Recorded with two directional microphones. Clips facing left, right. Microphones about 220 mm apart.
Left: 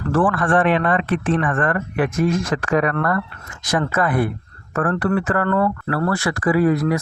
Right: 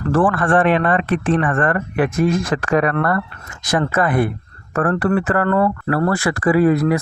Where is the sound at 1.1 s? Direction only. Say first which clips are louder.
Right 2 dB; 35° right (ahead or behind).